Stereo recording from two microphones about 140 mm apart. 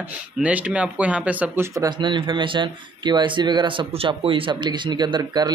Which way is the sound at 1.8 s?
30° right (ahead or behind).